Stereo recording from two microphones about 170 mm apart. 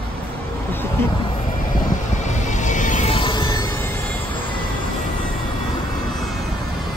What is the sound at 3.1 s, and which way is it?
Music, 30° left (ahead or behind).